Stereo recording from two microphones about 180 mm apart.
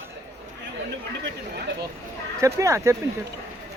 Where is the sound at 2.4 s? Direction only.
15° right (ahead or behind).